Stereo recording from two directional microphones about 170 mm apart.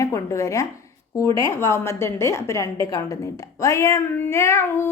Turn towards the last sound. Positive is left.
turn(degrees=15)  # may be behind; listen again after turning